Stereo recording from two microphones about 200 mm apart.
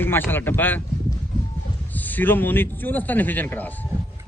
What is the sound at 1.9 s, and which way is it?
Speech, 10° left (ahead or behind).